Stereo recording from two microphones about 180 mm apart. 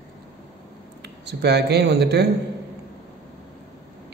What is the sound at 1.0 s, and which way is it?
Speech, 70° right (ahead or behind).